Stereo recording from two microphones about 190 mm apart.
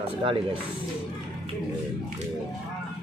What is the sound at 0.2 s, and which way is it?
Speech, 30° right (ahead or behind).